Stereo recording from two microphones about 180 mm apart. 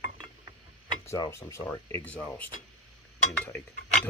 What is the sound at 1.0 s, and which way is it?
Speech, 15° left (ahead or behind).